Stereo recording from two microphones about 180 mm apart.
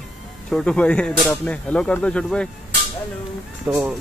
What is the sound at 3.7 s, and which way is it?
Speech, 5° right (ahead or behind).